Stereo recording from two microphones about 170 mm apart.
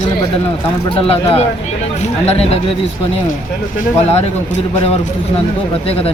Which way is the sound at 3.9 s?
40° left (ahead or behind).